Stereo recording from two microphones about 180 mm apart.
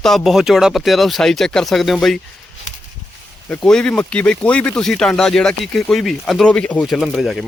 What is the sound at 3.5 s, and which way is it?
Speech, 5° left (ahead or behind).